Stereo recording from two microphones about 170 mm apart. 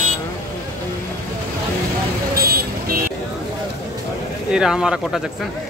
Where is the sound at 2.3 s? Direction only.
60° right (ahead or behind).